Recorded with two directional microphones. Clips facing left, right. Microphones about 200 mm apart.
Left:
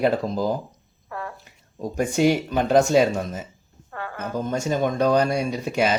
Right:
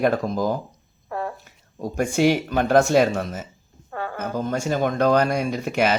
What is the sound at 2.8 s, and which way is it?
Speech, 15° left (ahead or behind).